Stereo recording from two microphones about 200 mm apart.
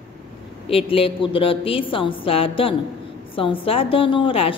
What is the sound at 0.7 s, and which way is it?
A woman's voice, 30° left (ahead or behind).